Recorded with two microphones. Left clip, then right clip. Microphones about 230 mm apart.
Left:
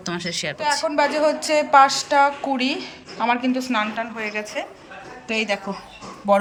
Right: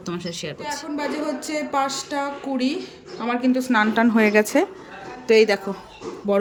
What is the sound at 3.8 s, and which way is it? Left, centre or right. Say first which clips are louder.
A woman's voice: right 7 dB; right.